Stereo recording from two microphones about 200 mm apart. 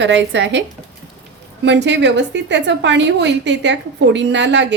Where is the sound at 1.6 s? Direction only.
60° right (ahead or behind).